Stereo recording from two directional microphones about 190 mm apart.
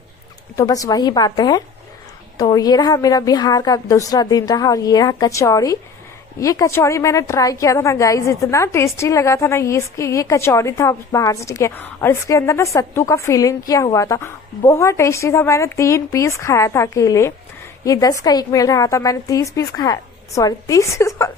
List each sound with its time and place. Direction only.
0.5 s a woman's voice: 20° left (ahead or behind)